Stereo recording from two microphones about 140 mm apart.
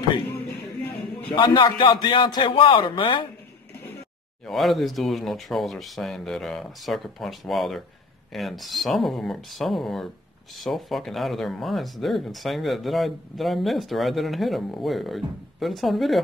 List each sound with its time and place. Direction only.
1.3 s a man's voice: 35° left (ahead or behind)
4.5 s speech: centre (ahead or behind)